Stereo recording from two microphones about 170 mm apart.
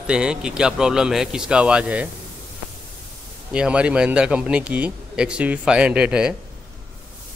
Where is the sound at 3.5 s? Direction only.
5° right (ahead or behind).